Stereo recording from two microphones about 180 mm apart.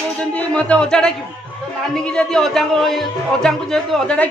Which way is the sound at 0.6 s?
5° left (ahead or behind).